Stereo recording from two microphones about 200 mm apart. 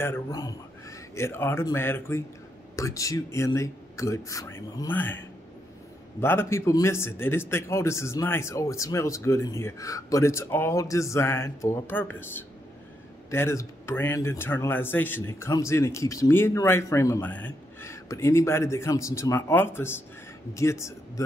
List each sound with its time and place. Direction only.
0.0 s a man's voice: 15° left (ahead or behind)
6.2 s speech: 10° left (ahead or behind)